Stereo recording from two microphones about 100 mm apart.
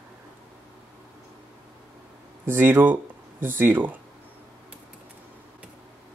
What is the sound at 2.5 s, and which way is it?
Speech, 20° right (ahead or behind).